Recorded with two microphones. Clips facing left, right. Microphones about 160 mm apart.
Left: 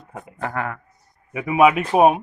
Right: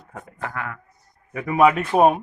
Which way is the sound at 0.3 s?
35° left (ahead or behind).